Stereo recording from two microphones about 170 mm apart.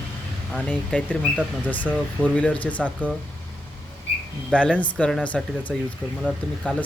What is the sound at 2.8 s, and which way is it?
Speech, 10° right (ahead or behind).